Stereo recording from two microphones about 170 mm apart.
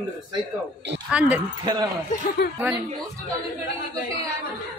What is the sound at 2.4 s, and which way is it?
Speech, 70° left (ahead or behind).